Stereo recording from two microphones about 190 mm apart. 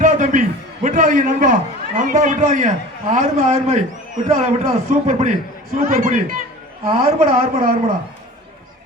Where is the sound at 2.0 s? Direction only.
40° right (ahead or behind).